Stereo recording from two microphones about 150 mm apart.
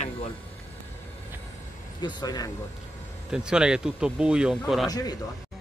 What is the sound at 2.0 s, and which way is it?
Speech, 25° left (ahead or behind).